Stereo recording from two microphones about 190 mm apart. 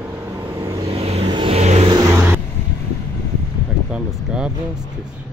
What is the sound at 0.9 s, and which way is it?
Vehicle, 35° right (ahead or behind).